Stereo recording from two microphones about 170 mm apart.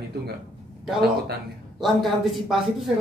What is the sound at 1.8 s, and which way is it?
Speech, centre (ahead or behind).